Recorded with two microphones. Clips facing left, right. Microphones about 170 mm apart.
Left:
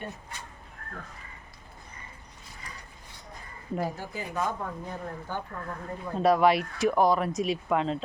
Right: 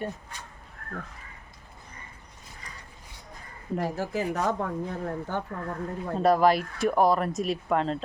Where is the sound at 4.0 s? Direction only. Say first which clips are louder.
Right 5 dB; 90° right.